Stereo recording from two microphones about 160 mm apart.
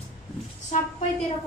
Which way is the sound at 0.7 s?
55° left (ahead or behind).